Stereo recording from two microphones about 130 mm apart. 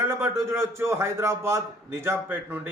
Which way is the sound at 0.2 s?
20° right (ahead or behind).